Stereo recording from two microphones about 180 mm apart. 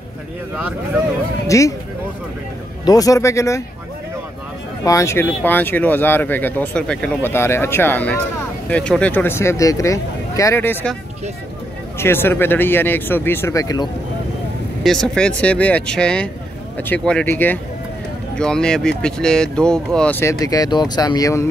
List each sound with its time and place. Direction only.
0.6 s speech: 10° right (ahead or behind)
1.5 s speech: 15° left (ahead or behind)
2.8 s speech: 20° left (ahead or behind)
4.8 s speech: 15° left (ahead or behind)
12.0 s speech: 10° left (ahead or behind)
14.8 s speech: 5° left (ahead or behind); by 21.5 s 20° left (ahead or behind)